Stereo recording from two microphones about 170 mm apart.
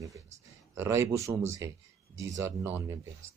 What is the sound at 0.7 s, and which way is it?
Speech, 15° right (ahead or behind).